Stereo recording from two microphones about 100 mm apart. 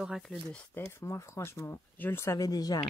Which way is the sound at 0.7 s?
25° left (ahead or behind).